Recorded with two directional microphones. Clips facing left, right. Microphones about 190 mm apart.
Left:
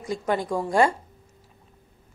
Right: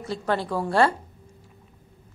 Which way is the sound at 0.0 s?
15° left (ahead or behind).